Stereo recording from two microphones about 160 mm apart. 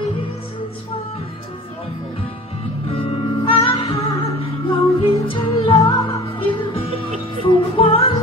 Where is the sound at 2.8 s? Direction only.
35° left (ahead or behind).